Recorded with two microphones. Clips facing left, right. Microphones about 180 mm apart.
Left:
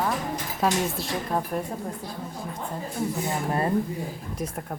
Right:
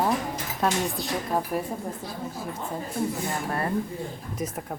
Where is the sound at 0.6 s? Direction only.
Centre (ahead or behind).